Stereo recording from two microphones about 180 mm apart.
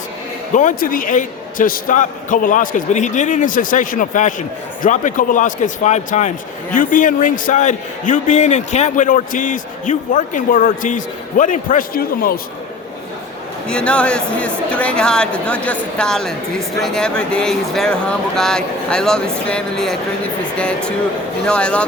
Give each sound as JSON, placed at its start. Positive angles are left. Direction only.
{"t": 0.5, "sound": "a man's voice", "side_deg": 50}
{"t": 13.7, "sound": "speech", "side_deg": 5}